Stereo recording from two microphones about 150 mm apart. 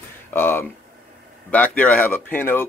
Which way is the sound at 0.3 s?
15° left (ahead or behind).